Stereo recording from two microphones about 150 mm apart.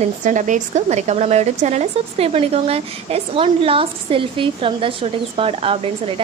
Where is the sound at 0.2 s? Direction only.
55° right (ahead or behind).